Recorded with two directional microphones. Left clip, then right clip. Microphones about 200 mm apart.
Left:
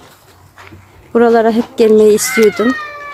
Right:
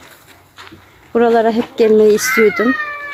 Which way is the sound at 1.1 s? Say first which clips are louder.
Left 2 dB; 15° left (ahead or behind).